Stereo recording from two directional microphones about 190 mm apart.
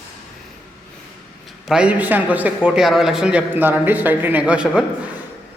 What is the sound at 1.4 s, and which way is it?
A man's voice, centre (ahead or behind).